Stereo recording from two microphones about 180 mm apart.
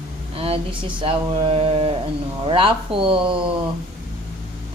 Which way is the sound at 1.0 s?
30° right (ahead or behind).